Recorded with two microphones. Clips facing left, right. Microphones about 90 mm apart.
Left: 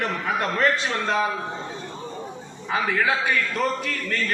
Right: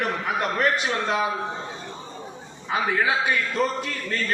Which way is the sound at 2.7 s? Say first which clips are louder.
Even; 20° right (ahead or behind).